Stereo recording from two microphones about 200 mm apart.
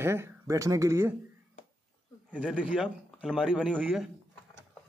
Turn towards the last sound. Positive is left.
turn(degrees=0)  # may be behind; listen again after turning